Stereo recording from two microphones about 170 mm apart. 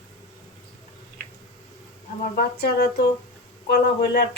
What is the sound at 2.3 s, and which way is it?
Speech, 70° left (ahead or behind).